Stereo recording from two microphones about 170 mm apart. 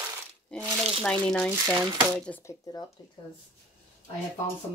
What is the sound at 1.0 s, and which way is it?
Speech, 5° left (ahead or behind).